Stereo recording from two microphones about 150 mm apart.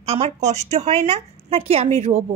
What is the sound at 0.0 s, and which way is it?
A woman's voice, 45° right (ahead or behind).